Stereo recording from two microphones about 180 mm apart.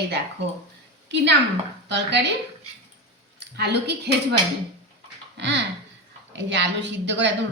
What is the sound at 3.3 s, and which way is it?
A woman's voice, 70° right (ahead or behind).